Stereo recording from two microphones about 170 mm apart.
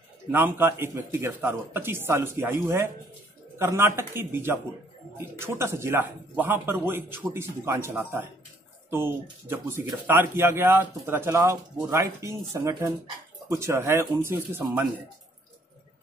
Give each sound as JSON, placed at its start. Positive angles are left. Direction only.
{"t": 0.3, "sound": "speech", "side_deg": -15}